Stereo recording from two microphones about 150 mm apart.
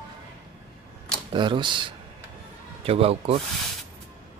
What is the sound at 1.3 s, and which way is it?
Speech, 30° right (ahead or behind).